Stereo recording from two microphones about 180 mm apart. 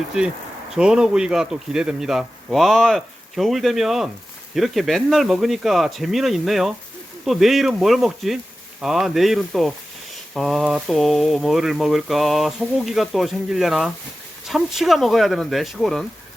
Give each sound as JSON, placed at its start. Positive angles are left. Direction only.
{"t": 0.1, "sound": "speech", "side_deg": -5}